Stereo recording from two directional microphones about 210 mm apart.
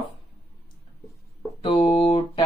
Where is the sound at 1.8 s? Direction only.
30° left (ahead or behind).